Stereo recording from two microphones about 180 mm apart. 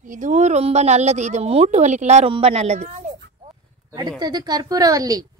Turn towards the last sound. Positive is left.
turn(degrees=-20)  # may be behind; listen again after turning